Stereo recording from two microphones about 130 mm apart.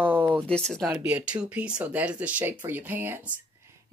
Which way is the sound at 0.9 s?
10° right (ahead or behind).